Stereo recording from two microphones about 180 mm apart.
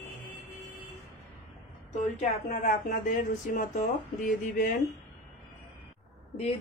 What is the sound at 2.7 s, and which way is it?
Speech, 50° left (ahead or behind).